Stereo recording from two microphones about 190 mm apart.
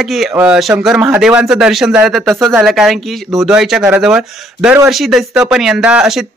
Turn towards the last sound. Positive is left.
turn(degrees=-5)  # may be behind; listen again after turning